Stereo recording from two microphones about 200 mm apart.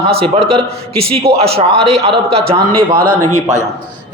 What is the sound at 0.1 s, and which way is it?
A man's voice, 30° right (ahead or behind).